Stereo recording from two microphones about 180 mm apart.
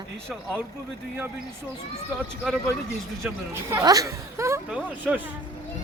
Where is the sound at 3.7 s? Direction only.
20° right (ahead or behind).